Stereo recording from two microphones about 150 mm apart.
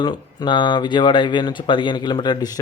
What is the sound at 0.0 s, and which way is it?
Speech, 30° left (ahead or behind).